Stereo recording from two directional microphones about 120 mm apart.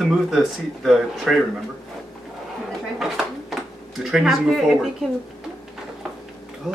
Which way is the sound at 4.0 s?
5° right (ahead or behind).